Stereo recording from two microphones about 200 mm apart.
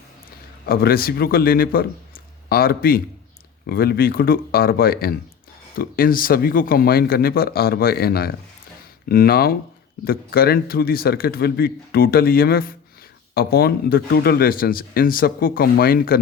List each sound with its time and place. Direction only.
0.6 s a man's voice: 50° left (ahead or behind)